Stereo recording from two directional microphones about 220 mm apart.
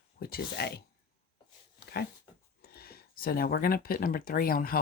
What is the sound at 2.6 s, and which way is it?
Speech, 45° left (ahead or behind).